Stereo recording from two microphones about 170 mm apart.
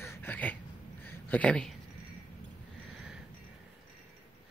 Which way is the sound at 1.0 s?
10° left (ahead or behind).